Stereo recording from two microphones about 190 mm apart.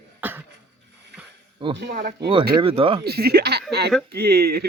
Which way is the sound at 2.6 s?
30° right (ahead or behind).